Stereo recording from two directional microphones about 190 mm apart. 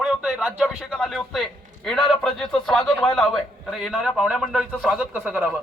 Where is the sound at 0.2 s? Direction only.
5° right (ahead or behind).